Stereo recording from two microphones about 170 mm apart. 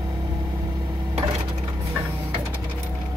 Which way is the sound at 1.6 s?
25° right (ahead or behind).